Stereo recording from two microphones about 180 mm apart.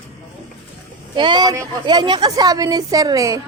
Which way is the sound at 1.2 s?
25° right (ahead or behind).